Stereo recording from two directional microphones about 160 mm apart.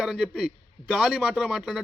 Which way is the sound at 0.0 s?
5° right (ahead or behind).